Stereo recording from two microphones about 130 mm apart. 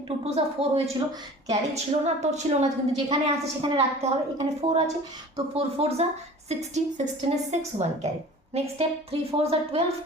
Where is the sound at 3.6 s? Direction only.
50° right (ahead or behind).